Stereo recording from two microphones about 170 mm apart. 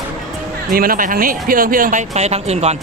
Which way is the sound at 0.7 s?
60° right (ahead or behind).